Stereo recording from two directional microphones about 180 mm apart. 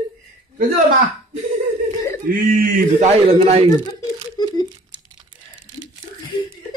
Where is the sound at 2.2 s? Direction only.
50° right (ahead or behind).